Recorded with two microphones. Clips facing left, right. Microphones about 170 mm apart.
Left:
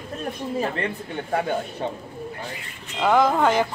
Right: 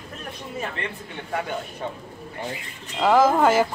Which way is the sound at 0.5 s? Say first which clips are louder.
Left 5 dB; 35° left (ahead or behind).